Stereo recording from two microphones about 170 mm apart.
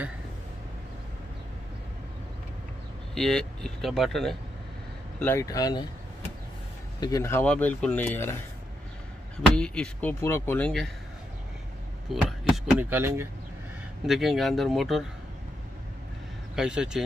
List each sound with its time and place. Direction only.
3.2 s speech: 5° left (ahead or behind)
5.2 s speech: 15° left (ahead or behind)
7.0 s speech: 20° left (ahead or behind)
9.6 s speech: 5° left (ahead or behind)
12.1 s speech: centre (ahead or behind)
12.9 s speech: 15° right (ahead or behind)
14.0 s speech: centre (ahead or behind)
16.5 s speech: 5° right (ahead or behind)